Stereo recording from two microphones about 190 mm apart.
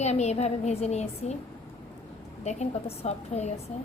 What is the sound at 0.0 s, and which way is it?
Speech, 35° left (ahead or behind).